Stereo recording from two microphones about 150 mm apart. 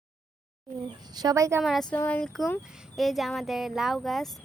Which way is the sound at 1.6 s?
Centre (ahead or behind).